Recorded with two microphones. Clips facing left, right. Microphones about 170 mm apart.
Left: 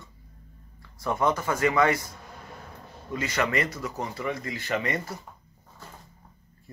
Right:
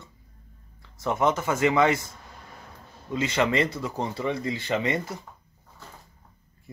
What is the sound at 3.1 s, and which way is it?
Speech, 25° right (ahead or behind).